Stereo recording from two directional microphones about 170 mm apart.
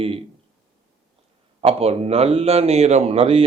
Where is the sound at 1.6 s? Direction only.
35° right (ahead or behind).